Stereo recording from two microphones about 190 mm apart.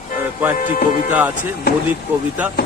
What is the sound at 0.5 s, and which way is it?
Music, 45° left (ahead or behind).